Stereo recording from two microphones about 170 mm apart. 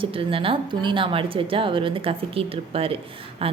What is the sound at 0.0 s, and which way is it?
Speech, 30° right (ahead or behind).